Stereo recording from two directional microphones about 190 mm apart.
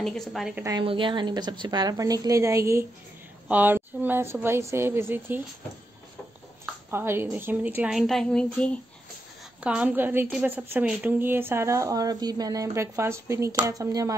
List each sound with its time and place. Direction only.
0.0 s a woman's voice: centre (ahead or behind)
0.7 s a woman's voice: 25° right (ahead or behind)
6.9 s a woman's voice: 10° right (ahead or behind); by 8.7 s 5° left (ahead or behind)
9.6 s a woman's voice: 5° right (ahead or behind)